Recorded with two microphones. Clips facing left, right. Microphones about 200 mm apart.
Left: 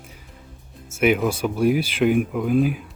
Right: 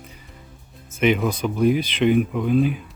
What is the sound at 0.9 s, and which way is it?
Speech, 5° left (ahead or behind).